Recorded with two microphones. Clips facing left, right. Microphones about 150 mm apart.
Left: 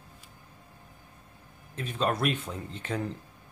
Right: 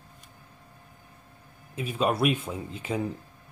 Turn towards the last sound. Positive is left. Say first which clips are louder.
# right 3 dB
turn(degrees=-10)  # may be behind; listen again after turning